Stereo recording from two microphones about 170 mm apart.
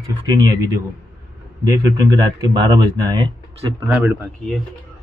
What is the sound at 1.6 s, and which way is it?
Speech, 20° right (ahead or behind).